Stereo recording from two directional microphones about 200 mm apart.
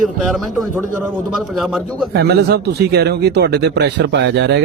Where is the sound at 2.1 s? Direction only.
55° right (ahead or behind).